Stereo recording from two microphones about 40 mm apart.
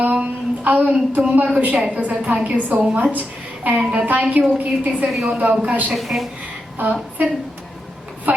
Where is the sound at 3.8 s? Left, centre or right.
Right.